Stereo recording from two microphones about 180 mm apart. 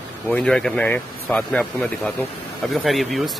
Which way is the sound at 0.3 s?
5° left (ahead or behind).